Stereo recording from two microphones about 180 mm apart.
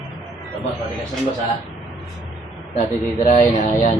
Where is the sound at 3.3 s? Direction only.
40° left (ahead or behind).